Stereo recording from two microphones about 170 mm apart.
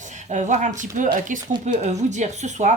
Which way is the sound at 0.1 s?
45° right (ahead or behind).